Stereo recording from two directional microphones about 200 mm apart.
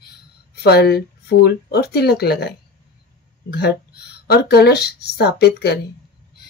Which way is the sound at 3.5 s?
55° left (ahead or behind).